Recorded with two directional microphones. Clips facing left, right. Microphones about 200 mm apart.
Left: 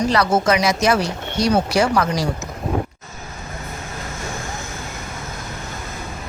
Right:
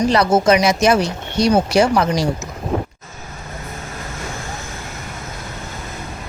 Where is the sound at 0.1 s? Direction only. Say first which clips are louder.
Right 3 dB; 20° right (ahead or behind).